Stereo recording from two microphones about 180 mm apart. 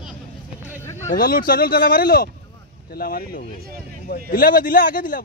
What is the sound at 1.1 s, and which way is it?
A man's voice, 55° left (ahead or behind).